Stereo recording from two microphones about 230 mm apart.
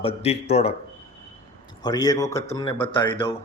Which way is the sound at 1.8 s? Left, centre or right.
Centre.